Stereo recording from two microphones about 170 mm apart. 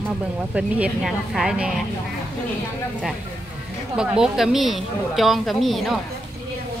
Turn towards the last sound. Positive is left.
turn(degrees=0)  # may be behind; listen again after turning